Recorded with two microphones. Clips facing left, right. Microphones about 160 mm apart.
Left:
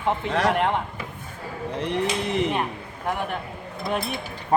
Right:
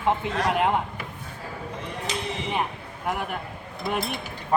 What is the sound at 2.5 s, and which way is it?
Speech, 5° right (ahead or behind).